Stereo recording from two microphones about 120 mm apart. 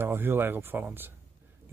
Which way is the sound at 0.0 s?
20° right (ahead or behind).